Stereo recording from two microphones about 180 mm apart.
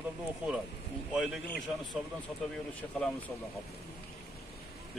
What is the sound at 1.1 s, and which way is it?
Speech, centre (ahead or behind).